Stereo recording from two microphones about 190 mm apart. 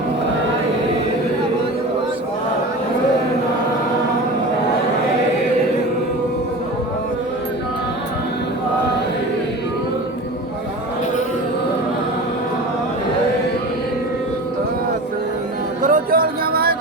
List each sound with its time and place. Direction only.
15.8 s music: 45° right (ahead or behind)